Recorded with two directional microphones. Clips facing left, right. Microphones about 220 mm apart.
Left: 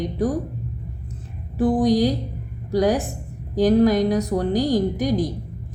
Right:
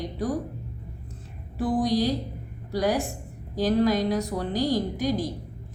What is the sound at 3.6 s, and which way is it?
Speech, 50° left (ahead or behind).